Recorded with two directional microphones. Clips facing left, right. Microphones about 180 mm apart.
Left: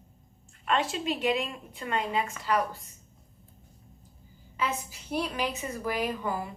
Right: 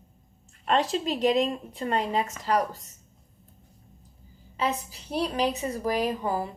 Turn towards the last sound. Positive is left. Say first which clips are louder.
# right 4 dB
turn(degrees=-35)  # may be behind; listen again after turning